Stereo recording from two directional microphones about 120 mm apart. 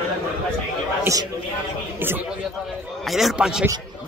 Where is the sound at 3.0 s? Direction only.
Centre (ahead or behind).